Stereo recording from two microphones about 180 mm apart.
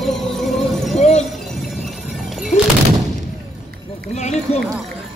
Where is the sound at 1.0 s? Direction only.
40° left (ahead or behind).